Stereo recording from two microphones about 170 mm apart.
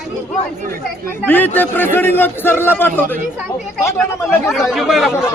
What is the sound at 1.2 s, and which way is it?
A man's voice, 10° left (ahead or behind).